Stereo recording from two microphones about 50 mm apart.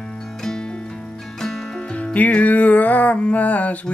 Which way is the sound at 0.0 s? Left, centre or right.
Centre.